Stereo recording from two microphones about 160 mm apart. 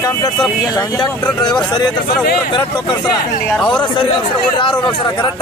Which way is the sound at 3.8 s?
30° left (ahead or behind).